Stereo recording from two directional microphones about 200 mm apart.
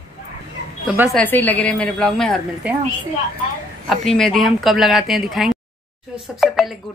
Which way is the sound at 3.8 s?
Centre (ahead or behind).